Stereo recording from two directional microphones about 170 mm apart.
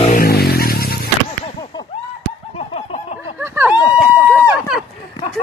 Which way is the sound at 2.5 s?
40° left (ahead or behind).